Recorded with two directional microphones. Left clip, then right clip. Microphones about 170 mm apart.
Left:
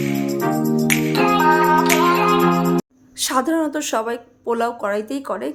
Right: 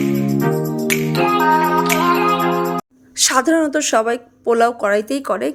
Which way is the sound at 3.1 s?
25° right (ahead or behind).